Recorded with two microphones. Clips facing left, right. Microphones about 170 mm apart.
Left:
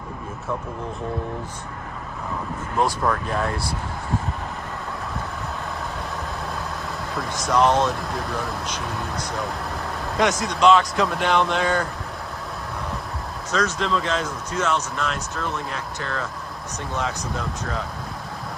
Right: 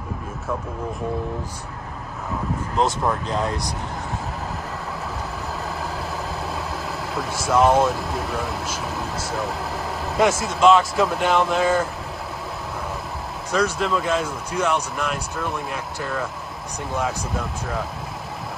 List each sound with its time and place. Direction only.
2.8 s speech: 20° right (ahead or behind)
7.2 s speech: 5° right (ahead or behind)
10.4 s speech: 5° right (ahead or behind)
13.5 s speech: 10° right (ahead or behind)